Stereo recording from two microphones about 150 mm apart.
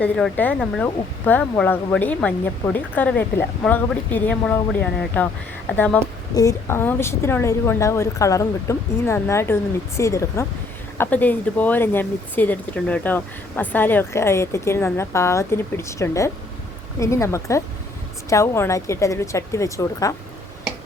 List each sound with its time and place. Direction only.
0.0 s speech: 10° left (ahead or behind)
6.3 s a woman's voice: 20° left (ahead or behind)